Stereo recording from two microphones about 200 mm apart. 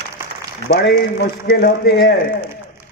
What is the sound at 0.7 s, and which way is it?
A man's voice, 55° left (ahead or behind).